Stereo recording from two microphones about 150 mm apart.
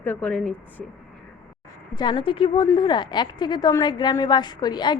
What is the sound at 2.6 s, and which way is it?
A woman's voice, 25° left (ahead or behind).